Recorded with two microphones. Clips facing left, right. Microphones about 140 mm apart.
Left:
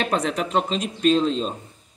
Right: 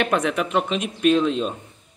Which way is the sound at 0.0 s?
35° left (ahead or behind).